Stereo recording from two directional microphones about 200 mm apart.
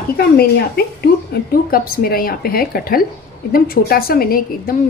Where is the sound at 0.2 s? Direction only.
50° left (ahead or behind).